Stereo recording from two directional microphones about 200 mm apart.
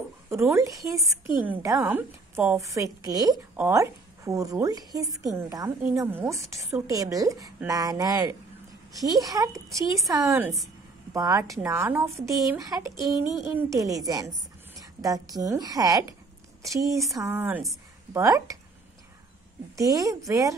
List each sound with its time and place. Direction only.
0.3 s a woman's voice: 15° right (ahead or behind)
19.7 s a woman's voice: 15° right (ahead or behind)